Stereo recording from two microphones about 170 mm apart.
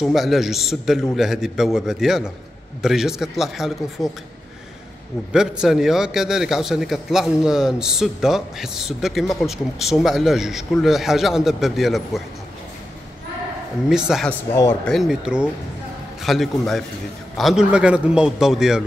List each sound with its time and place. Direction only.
0.0 s a man's voice: centre (ahead or behind)
5.3 s a man's voice: 5° right (ahead or behind)
13.8 s a man's voice: 5° right (ahead or behind)
14.5 s speech: 15° left (ahead or behind)
14.9 s a man's voice: centre (ahead or behind)